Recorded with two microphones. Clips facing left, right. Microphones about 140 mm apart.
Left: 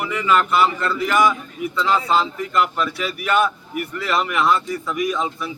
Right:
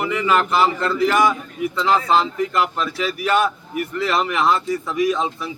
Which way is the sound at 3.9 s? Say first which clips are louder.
Right 1 dB; 25° right (ahead or behind).